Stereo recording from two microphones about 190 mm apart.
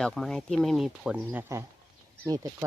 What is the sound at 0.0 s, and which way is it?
Speech, centre (ahead or behind).